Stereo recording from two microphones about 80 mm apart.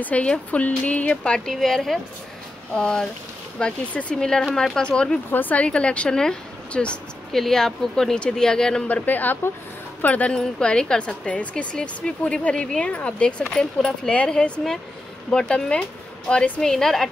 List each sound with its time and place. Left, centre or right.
0.0 s speech: centre
5.3 s speech: left
8.8 s a woman's voice: left
16.7 s a woman's voice: centre